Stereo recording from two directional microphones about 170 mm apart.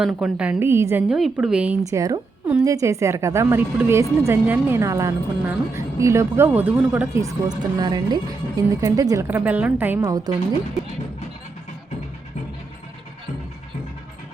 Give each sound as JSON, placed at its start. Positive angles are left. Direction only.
{"t": 0.0, "sound": "a woman's voice", "side_deg": -5}
{"t": 1.8, "sound": "a woman's voice", "side_deg": -20}